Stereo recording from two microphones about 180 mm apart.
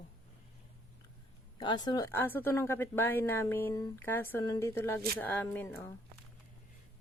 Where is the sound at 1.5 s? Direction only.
20° left (ahead or behind).